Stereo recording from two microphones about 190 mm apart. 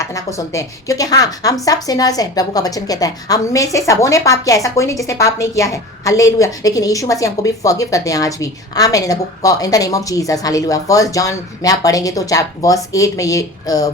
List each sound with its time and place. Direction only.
0.0 s a woman's voice: 15° left (ahead or behind)